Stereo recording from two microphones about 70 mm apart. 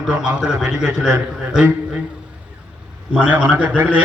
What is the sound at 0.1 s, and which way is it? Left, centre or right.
A man's voice, centre.